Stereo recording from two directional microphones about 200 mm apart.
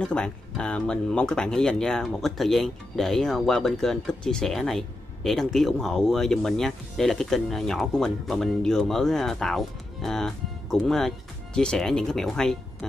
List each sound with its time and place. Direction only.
0.0 s speech: 5° left (ahead or behind)